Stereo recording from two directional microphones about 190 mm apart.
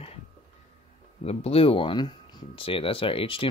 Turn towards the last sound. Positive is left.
turn(degrees=30)  # may be behind; listen again after turning